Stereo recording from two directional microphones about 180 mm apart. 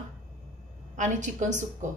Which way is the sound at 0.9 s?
45° right (ahead or behind).